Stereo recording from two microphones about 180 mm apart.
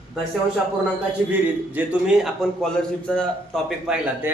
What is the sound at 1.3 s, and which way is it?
A man's voice, 10° right (ahead or behind).